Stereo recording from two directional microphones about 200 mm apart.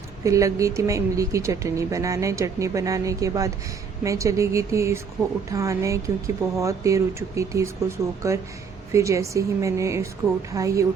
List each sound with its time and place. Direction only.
0.3 s speech: 15° right (ahead or behind)